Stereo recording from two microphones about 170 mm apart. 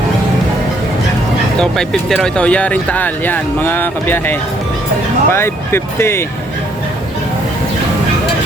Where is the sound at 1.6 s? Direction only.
Centre (ahead or behind).